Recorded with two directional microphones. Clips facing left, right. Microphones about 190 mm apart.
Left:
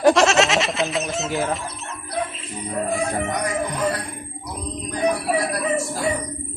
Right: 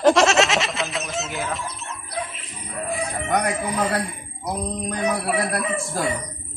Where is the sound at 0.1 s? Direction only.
Centre (ahead or behind).